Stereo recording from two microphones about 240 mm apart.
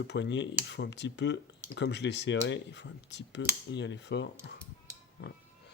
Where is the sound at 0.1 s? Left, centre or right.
Left.